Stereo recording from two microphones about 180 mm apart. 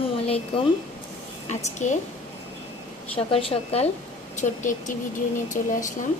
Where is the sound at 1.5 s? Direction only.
40° left (ahead or behind).